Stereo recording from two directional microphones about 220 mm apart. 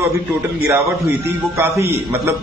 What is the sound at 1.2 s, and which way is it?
Speech, 10° right (ahead or behind).